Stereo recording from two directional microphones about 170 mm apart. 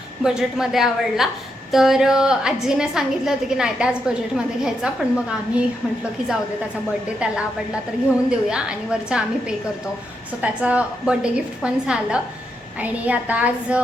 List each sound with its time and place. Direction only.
0.2 s a woman's voice: 5° right (ahead or behind)
8.3 s a woman's voice: 5° right (ahead or behind)